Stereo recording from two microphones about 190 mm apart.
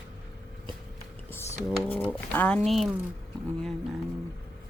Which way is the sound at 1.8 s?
10° left (ahead or behind).